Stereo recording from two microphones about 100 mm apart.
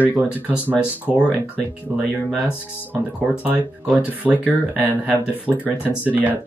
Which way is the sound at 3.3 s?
15° right (ahead or behind).